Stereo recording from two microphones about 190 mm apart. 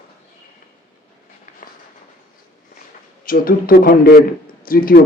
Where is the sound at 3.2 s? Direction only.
50° left (ahead or behind).